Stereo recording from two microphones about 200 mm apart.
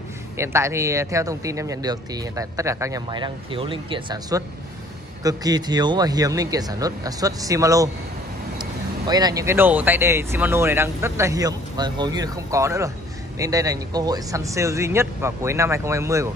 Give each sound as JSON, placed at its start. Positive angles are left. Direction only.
{"t": 0.4, "sound": "speech", "side_deg": -15}